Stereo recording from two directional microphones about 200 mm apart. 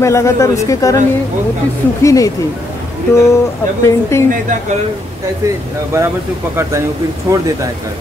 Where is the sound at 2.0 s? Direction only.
15° left (ahead or behind).